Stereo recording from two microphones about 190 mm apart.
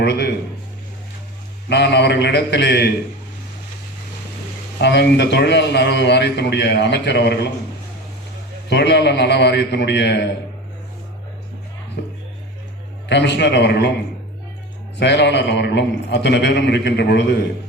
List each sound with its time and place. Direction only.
0.0 s a man's voice: 60° left (ahead or behind)
1.7 s a man's voice: 65° left (ahead or behind)
4.8 s a man's voice: 65° left (ahead or behind)
8.7 s a man's voice: 65° left (ahead or behind)
12.0 s music: 60° left (ahead or behind)
13.1 s a man's voice: 65° left (ahead or behind)
14.9 s a man's voice: 65° left (ahead or behind)